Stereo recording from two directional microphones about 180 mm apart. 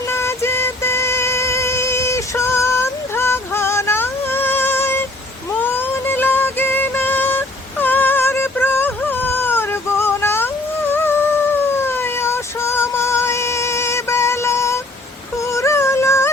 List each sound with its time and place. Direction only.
0.1 s music: 15° left (ahead or behind)
10.9 s humming: 10° left (ahead or behind)
11.8 s female singing: 15° left (ahead or behind)
15.4 s music: 15° left (ahead or behind)